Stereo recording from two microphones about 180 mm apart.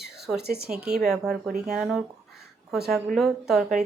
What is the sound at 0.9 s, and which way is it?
Speech, centre (ahead or behind).